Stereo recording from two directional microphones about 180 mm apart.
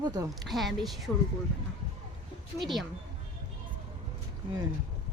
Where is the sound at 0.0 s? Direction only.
20° right (ahead or behind).